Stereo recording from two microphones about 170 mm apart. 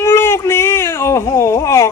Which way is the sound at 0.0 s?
15° left (ahead or behind).